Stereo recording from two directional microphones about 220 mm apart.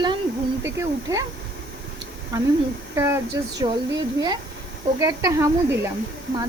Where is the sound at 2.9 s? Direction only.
10° right (ahead or behind).